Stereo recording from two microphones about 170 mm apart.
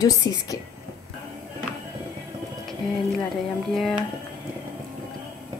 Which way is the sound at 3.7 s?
Centre (ahead or behind).